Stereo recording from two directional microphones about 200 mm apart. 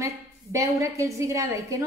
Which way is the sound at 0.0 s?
15° right (ahead or behind).